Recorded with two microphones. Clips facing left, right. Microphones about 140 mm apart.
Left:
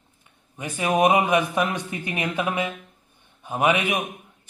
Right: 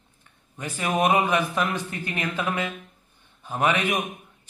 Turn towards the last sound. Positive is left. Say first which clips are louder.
# left 2 dB
turn(degrees=10)  # may be behind; listen again after turning